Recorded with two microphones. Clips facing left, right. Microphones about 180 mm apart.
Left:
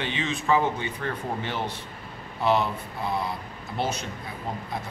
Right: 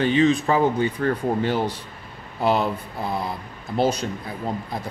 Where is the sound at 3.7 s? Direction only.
35° right (ahead or behind).